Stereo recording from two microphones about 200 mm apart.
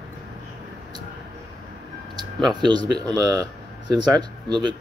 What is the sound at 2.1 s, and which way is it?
Speech, 20° right (ahead or behind).